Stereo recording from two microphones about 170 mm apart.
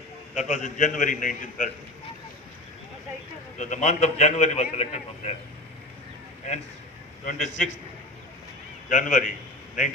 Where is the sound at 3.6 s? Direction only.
45° left (ahead or behind).